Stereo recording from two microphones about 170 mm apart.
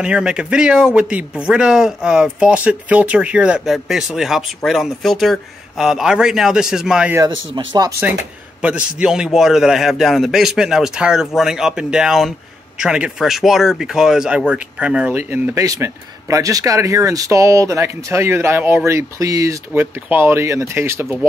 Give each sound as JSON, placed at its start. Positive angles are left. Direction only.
{"t": 0.0, "sound": "speech", "side_deg": -5}
{"t": 7.2, "sound": "speech", "side_deg": -25}
{"t": 8.5, "sound": "a man's voice", "side_deg": -5}